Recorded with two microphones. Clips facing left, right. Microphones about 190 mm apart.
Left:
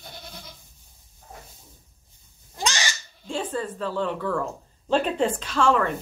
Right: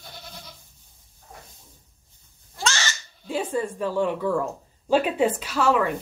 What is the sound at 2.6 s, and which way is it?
Crow, 15° left (ahead or behind).